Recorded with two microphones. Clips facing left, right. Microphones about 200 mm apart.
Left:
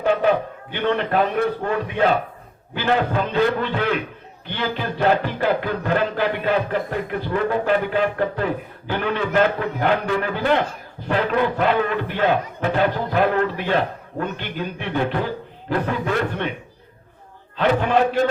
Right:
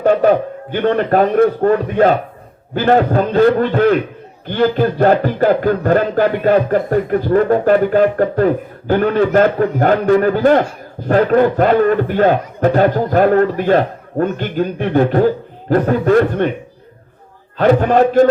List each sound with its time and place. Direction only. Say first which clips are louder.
0.0 s a man's voice: right 7 dB; 45° right (ahead or behind)
17.6 s a man's voice: right 7 dB; 45° right (ahead or behind)